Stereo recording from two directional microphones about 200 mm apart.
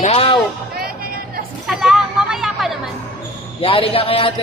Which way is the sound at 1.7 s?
Centre (ahead or behind).